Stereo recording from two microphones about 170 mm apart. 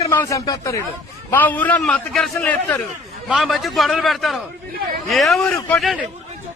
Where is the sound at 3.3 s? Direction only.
Centre (ahead or behind).